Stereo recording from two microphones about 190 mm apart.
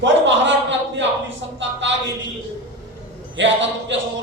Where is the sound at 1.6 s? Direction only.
75° right (ahead or behind).